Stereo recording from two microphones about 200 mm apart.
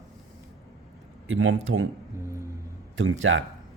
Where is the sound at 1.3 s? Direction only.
80° right.